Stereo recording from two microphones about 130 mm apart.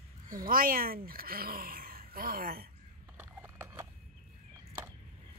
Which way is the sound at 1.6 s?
90° right.